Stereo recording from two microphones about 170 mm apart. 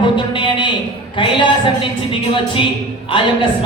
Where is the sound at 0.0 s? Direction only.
30° left (ahead or behind).